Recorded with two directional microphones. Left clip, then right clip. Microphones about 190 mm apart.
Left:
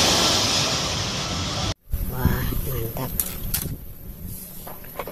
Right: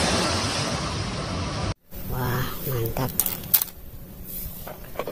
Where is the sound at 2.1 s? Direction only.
Centre (ahead or behind).